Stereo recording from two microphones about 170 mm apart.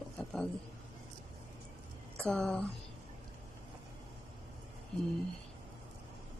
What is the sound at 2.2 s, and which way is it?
Speech, 5° left (ahead or behind).